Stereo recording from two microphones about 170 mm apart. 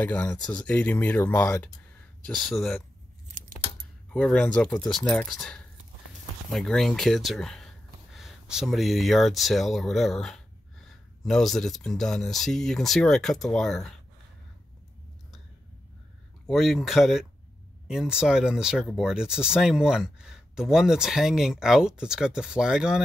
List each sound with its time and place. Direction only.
0.0 s speech: 10° left (ahead or behind)
4.1 s speech: 5° left (ahead or behind)
16.4 s speech: centre (ahead or behind)